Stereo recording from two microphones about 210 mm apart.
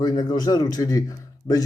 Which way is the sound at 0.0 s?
20° left (ahead or behind).